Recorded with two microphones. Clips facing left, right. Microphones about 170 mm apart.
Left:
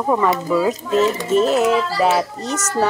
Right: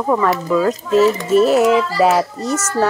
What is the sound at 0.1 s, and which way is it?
Speech, 10° left (ahead or behind).